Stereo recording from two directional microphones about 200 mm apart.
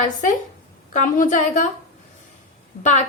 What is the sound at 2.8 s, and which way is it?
Speech, 35° left (ahead or behind).